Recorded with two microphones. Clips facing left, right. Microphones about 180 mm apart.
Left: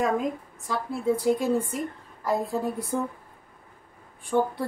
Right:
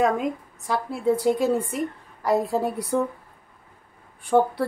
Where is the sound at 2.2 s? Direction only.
75° right (ahead or behind).